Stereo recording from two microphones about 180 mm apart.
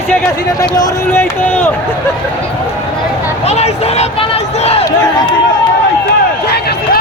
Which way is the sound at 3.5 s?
35° left (ahead or behind).